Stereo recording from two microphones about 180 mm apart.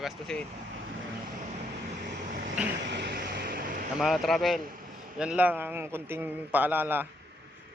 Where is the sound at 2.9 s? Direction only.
70° right (ahead or behind).